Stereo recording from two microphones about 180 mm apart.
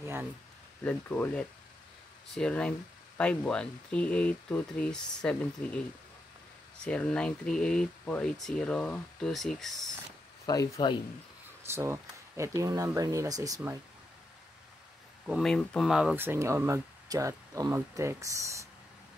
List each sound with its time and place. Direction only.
0.0 s speech: 10° right (ahead or behind)
0.8 s speech: 10° left (ahead or behind)
6.8 s speech: 5° left (ahead or behind)
10.4 s speech: 20° left (ahead or behind)
11.6 s speech: 15° right (ahead or behind)
15.2 s speech: centre (ahead or behind); by 18.7 s 15° right (ahead or behind)